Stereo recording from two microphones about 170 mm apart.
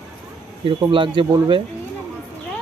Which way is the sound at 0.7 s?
30° right (ahead or behind).